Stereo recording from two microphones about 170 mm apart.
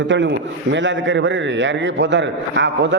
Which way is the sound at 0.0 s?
90° right.